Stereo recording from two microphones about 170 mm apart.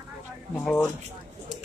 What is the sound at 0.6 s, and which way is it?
Speech, 10° left (ahead or behind).